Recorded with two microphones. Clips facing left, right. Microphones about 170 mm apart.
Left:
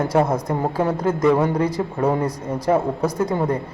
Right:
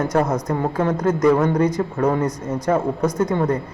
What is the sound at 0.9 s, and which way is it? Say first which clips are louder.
Speech: right 2 dB; 25° left (ahead or behind).